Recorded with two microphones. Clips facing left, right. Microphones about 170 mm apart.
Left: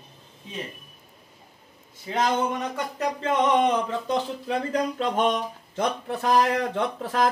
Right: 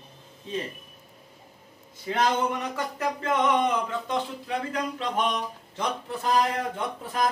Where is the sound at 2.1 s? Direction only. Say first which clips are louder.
Left 1 dB; 15° left (ahead or behind).